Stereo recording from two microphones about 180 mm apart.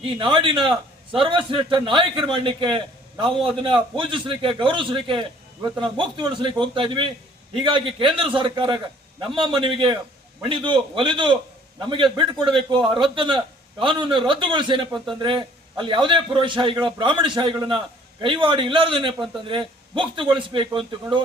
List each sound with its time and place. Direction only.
0.0 s a man's voice: 30° right (ahead or behind)